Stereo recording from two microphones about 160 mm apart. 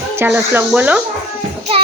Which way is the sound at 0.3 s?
10° right (ahead or behind).